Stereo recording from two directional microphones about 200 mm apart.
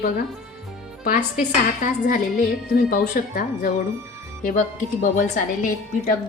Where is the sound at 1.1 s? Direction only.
40° left (ahead or behind).